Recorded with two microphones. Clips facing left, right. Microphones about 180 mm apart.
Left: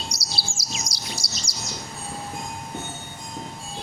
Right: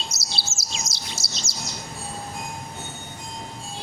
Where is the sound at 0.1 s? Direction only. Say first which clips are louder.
Left 1 dB; 25° right (ahead or behind).